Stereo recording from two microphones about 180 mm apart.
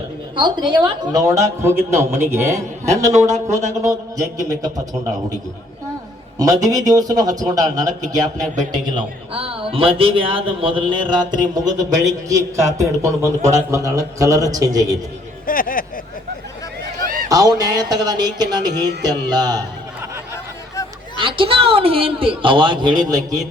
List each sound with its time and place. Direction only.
0.3 s a man's voice: 25° right (ahead or behind)
6.4 s speech: 20° right (ahead or behind)
9.0 s a woman's voice: 30° right (ahead or behind)
15.4 s speech: 50° left (ahead or behind)
17.0 s a sound: 55° right (ahead or behind)
17.2 s speech: 20° right (ahead or behind)
21.2 s speech: 30° right (ahead or behind)